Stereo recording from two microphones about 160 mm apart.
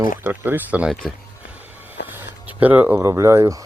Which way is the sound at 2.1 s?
10° right (ahead or behind).